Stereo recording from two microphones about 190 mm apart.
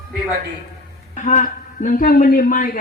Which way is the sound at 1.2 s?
40° left (ahead or behind).